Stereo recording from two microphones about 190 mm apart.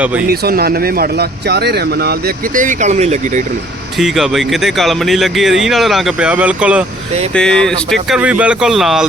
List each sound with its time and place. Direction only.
0.3 s a man's voice: 55° right (ahead or behind); by 3.4 s 40° right (ahead or behind)
3.9 s speech: centre (ahead or behind)